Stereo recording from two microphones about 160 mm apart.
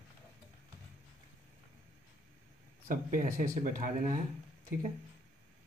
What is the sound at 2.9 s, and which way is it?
Speech, 60° right (ahead or behind).